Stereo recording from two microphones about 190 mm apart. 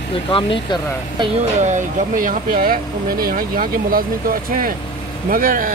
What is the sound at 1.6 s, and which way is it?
Speech, 40° right (ahead or behind).